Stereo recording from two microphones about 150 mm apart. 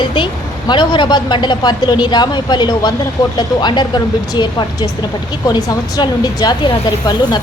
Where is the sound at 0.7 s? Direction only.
30° left (ahead or behind).